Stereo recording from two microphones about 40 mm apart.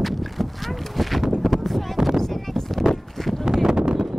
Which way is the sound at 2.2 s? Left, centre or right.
Centre.